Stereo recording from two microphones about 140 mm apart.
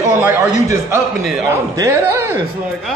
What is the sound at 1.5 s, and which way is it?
Speech, 20° right (ahead or behind).